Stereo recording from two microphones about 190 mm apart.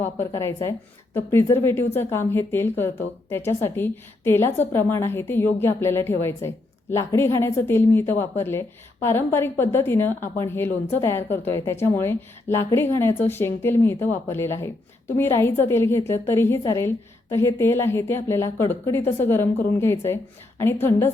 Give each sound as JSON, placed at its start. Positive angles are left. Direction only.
{"t": 0.0, "sound": "speech", "side_deg": 15}